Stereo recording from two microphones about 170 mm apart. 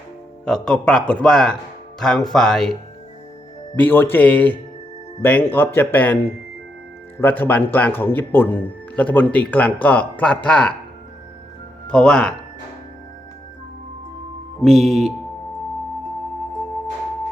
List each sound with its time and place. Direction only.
0.4 s a man's voice: 5° left (ahead or behind)
3.8 s speech: 10° left (ahead or behind)
7.2 s speech: 10° left (ahead or behind)
11.9 s a man's voice: 5° left (ahead or behind)
14.6 s a man's voice: centre (ahead or behind)